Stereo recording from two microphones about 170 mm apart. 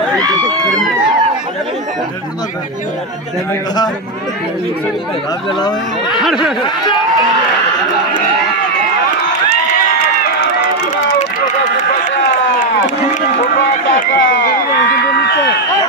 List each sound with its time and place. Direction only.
6.1 s speech: centre (ahead or behind)
14.1 s speech: 90° left
15.0 s a sound: 70° left (ahead or behind); by 15.6 s 85° left